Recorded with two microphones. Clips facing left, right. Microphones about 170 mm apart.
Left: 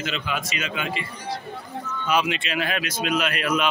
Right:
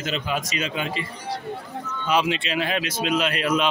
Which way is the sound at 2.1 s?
30° right (ahead or behind).